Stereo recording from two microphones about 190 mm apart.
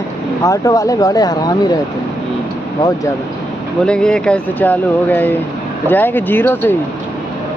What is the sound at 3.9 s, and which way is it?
Speech, 5° left (ahead or behind).